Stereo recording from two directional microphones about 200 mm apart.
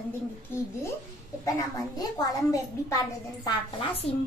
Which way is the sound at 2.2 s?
15° left (ahead or behind).